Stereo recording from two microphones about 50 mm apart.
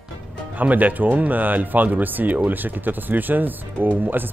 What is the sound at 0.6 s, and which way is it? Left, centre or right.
Speech, right.